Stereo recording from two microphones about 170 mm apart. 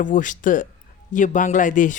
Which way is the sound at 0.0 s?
50° left (ahead or behind).